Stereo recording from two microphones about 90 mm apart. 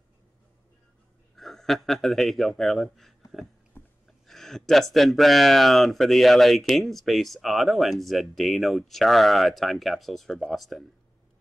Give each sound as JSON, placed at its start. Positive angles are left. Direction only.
{"t": 1.3, "sound": "a man's voice", "side_deg": 5}
{"t": 3.8, "sound": "a sound", "side_deg": 25}
{"t": 4.3, "sound": "speech", "side_deg": 5}